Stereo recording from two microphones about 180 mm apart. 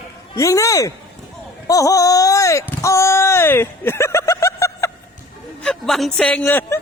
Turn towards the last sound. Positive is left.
turn(degrees=10)  # may be behind; listen again after turning